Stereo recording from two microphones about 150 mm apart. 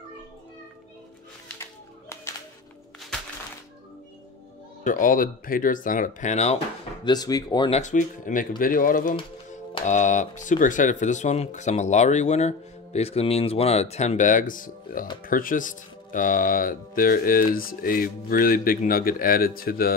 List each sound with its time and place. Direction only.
1.6 s music: 20° left (ahead or behind)
4.8 s speech: 65° left (ahead or behind); by 6.6 s 45° left (ahead or behind)
7.1 s speech: 25° left (ahead or behind)
7.7 s speech: 55° left (ahead or behind)
9.8 s speech: 55° left (ahead or behind); by 19.9 s 80° left